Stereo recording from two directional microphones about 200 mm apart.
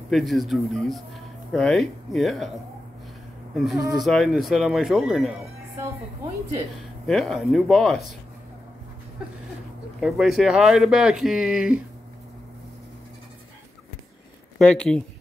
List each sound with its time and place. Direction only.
0.1 s speech: centre (ahead or behind)
3.5 s speech: centre (ahead or behind)
7.1 s speech: centre (ahead or behind)
9.9 s speech: centre (ahead or behind)
14.6 s speech: 5° left (ahead or behind)